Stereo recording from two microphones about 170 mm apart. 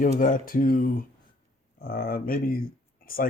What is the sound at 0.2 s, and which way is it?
Speech, 50° left (ahead or behind).